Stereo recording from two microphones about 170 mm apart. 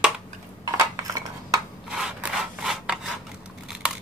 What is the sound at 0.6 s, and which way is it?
Dishes, 20° right (ahead or behind).